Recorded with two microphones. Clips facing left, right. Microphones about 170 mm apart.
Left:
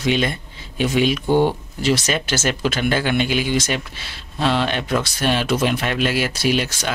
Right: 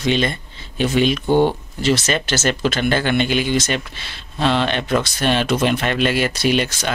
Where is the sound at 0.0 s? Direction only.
10° left (ahead or behind).